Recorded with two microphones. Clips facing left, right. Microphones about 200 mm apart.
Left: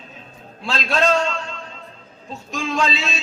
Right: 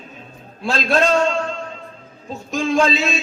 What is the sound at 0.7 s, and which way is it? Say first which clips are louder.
Speech: right 3 dB; 50° right (ahead or behind).